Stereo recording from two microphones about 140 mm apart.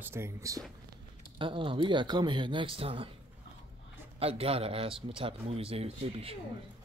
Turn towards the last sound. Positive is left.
turn(degrees=-45)  # may be behind; listen again after turning